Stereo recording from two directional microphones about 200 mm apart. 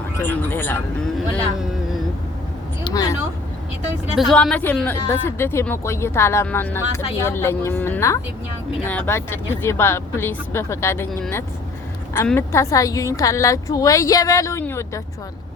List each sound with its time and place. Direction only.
0.2 s speech: 10° left (ahead or behind)
2.9 s a sound: 20° left (ahead or behind)
4.1 s speech: centre (ahead or behind)